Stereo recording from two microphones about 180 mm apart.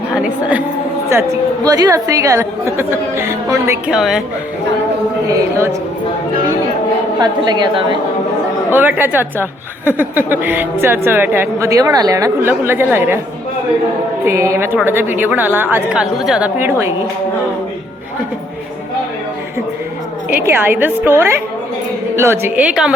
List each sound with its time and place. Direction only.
0.2 s a woman's voice: 5° right (ahead or behind)
1.6 s a woman's voice: 20° right (ahead or behind)
3.9 s speech: centre (ahead or behind)
5.3 s a woman's voice: 15° right (ahead or behind)
7.2 s a woman's voice: 25° right (ahead or behind)
8.7 s a woman's voice: 10° right (ahead or behind)
14.3 s a woman's voice: 15° right (ahead or behind)
20.3 s a woman's voice: 10° right (ahead or behind)